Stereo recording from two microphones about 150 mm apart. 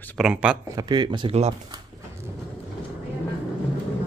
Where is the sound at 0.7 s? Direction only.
30° right (ahead or behind).